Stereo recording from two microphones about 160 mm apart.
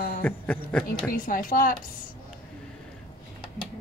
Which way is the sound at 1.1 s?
60° left (ahead or behind).